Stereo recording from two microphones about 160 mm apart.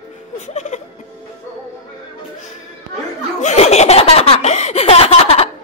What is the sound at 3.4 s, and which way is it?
Laughter, 45° left (ahead or behind).